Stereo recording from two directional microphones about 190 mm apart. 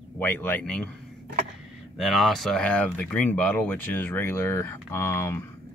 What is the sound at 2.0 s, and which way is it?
Speech, centre (ahead or behind).